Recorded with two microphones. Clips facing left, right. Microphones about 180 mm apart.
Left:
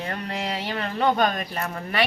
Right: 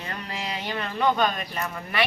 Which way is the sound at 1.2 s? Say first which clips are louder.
Left 2 dB; 45° left (ahead or behind).